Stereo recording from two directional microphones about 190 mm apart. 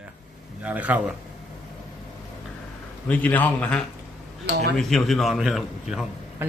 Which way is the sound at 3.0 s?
5° left (ahead or behind).